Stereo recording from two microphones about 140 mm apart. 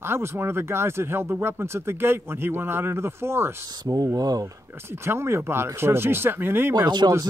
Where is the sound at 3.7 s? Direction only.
25° right (ahead or behind).